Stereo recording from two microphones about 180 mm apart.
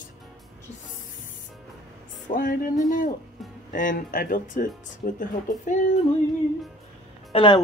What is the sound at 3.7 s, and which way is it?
Speech, 45° left (ahead or behind).